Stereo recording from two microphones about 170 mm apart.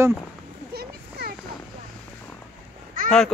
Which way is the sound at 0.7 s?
65° right (ahead or behind).